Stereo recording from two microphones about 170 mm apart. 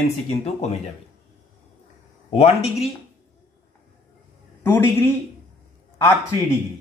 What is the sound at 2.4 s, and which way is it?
Speech, 35° left (ahead or behind).